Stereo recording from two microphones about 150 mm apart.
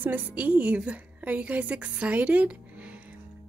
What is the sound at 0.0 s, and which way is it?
A woman's voice, 10° right (ahead or behind).